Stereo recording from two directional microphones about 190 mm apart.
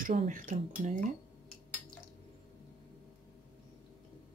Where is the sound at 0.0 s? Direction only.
45° right (ahead or behind).